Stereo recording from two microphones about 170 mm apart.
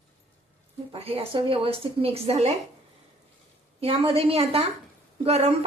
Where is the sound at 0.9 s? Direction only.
35° right (ahead or behind).